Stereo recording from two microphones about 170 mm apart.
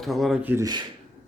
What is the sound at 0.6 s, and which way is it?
Speech, 25° right (ahead or behind).